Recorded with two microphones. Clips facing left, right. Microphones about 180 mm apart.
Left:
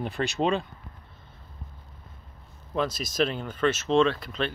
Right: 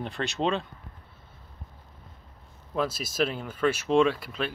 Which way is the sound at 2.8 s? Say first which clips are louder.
Left 1 dB; 5° right (ahead or behind).